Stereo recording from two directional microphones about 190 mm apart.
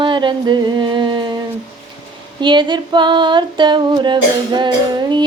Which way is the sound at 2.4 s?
25° right (ahead or behind).